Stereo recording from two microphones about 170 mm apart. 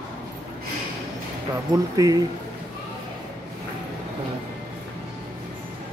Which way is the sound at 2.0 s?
20° right (ahead or behind).